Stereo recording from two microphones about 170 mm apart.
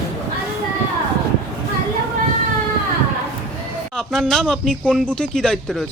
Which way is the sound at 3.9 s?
5° left (ahead or behind).